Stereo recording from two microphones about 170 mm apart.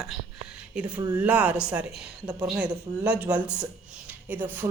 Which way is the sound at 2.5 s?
5° right (ahead or behind).